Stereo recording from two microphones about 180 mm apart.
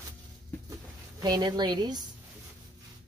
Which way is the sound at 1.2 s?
25° right (ahead or behind).